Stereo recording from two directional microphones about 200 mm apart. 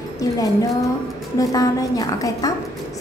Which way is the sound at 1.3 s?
15° left (ahead or behind).